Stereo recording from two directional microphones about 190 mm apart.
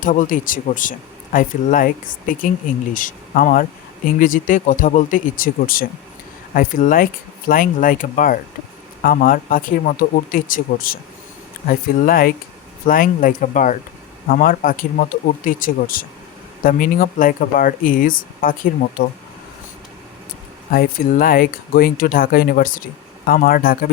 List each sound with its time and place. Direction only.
0.0 s speech: 45° left (ahead or behind)
20.7 s speech: 50° left (ahead or behind)